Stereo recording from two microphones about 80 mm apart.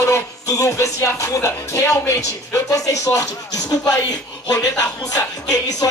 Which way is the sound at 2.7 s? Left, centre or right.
Left.